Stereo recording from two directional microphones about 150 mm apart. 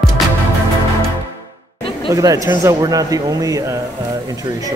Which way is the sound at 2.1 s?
25° right (ahead or behind).